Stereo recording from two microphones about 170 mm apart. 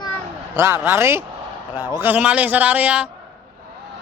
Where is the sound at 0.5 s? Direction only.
15° right (ahead or behind).